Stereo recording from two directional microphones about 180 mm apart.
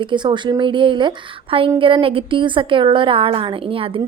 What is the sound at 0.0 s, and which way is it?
Speech, 25° right (ahead or behind).